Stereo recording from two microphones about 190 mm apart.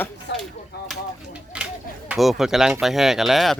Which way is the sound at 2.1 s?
Centre (ahead or behind).